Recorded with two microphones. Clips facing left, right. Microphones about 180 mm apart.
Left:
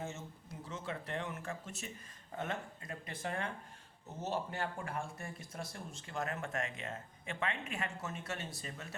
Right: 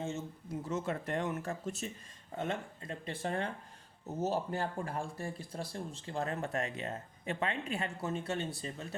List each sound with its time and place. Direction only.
0.7 s speech: 45° right (ahead or behind)
2.4 s speech: 25° right (ahead or behind)